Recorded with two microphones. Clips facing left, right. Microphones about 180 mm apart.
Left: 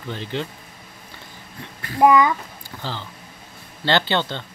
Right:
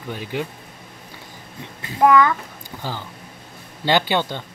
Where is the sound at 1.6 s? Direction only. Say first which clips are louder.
Even; 20° right (ahead or behind).